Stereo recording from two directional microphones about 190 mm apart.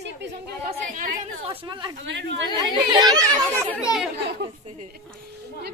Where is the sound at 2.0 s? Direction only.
75° right (ahead or behind).